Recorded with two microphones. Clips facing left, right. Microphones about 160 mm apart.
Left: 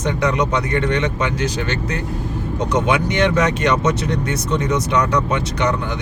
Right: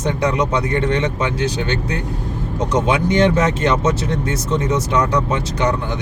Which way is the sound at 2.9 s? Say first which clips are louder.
Right 4 dB; 30° right (ahead or behind).